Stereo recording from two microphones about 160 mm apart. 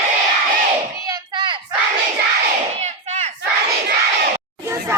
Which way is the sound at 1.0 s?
25° right (ahead or behind).